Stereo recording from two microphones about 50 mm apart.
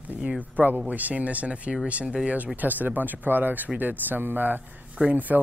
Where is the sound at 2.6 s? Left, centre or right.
Right.